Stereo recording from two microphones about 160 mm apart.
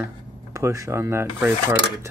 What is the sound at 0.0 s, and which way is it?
Speech, 20° right (ahead or behind).